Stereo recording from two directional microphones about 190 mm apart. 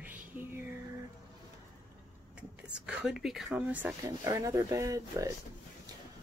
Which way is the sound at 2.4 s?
5° right (ahead or behind).